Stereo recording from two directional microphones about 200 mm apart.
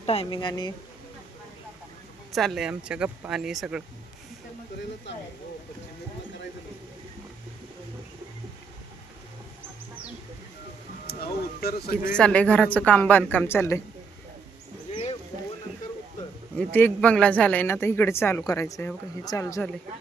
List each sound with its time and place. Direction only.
0.0 s speech: 30° left (ahead or behind)
2.3 s speech: centre (ahead or behind)
11.0 s speech: 55° left (ahead or behind)
12.1 s speech: 5° left (ahead or behind)
16.6 s speech: 5° left (ahead or behind)